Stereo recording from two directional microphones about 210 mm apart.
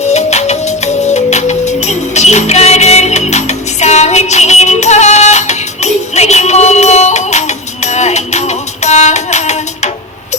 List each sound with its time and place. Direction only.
0.1 s music: 30° left (ahead or behind)